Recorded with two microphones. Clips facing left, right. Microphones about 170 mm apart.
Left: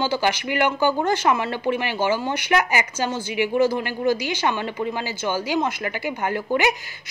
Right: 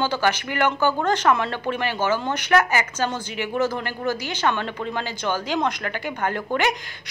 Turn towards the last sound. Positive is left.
turn(degrees=10)  # may be behind; listen again after turning